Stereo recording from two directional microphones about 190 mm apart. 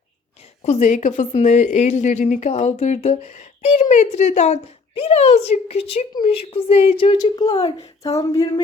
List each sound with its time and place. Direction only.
0.6 s a woman's voice: 35° left (ahead or behind); by 7.5 s 20° left (ahead or behind)
7.5 s a woman's voice: 30° left (ahead or behind)
8.4 s speech: 20° left (ahead or behind)